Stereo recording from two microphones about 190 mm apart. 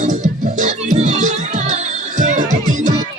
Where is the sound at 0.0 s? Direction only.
40° right (ahead or behind).